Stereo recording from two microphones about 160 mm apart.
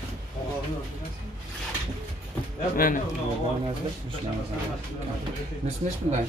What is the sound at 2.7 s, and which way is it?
Speech, 60° left (ahead or behind).